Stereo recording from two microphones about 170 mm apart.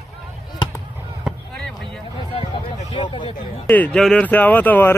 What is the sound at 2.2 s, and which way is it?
Speech, 35° left (ahead or behind).